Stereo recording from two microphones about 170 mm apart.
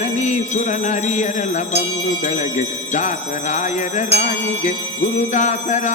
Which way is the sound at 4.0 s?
40° left (ahead or behind).